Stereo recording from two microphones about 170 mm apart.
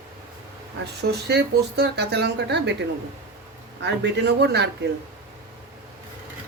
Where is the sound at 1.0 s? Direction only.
70° right (ahead or behind).